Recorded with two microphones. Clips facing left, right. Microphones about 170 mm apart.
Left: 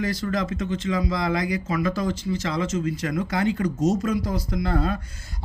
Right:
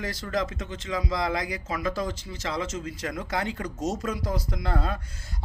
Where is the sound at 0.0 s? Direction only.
30° right (ahead or behind).